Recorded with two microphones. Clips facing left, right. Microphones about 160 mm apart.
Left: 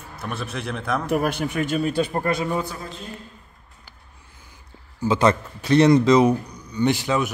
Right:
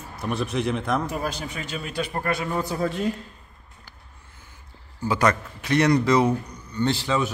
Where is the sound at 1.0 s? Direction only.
60° left (ahead or behind).